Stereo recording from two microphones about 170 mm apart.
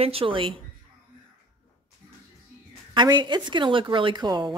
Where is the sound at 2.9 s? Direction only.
25° right (ahead or behind).